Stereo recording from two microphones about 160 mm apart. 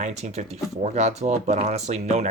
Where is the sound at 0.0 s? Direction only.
45° right (ahead or behind).